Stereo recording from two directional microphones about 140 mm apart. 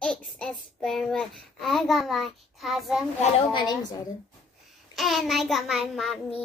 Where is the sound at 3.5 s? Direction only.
30° left (ahead or behind).